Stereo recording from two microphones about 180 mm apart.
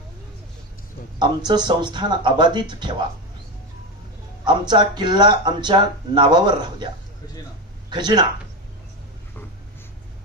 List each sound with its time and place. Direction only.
1.2 s speech: 25° right (ahead or behind)
4.5 s speech: 25° right (ahead or behind)
7.9 s speech: 25° right (ahead or behind)